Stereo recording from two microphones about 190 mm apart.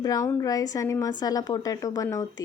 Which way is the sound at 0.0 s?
20° left (ahead or behind).